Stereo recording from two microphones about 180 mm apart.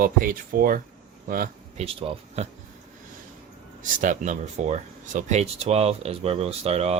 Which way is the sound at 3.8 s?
45° right (ahead or behind).